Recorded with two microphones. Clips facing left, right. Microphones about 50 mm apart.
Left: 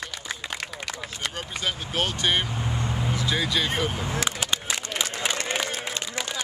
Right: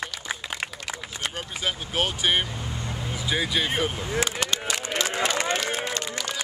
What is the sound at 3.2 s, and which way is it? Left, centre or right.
Speech, centre.